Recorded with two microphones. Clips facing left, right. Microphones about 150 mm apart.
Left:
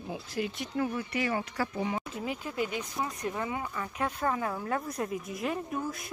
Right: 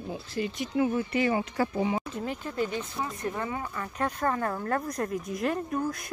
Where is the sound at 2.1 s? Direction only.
5° left (ahead or behind).